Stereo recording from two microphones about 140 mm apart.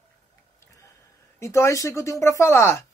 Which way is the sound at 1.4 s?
20° left (ahead or behind).